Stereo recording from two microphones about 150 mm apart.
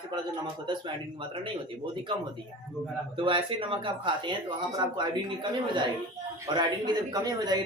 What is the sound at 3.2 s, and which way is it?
Speech, 35° right (ahead or behind).